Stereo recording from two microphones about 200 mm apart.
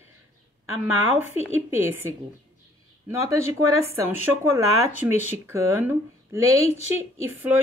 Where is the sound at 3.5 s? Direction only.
15° right (ahead or behind).